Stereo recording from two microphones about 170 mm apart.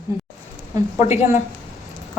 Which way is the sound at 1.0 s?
50° left (ahead or behind).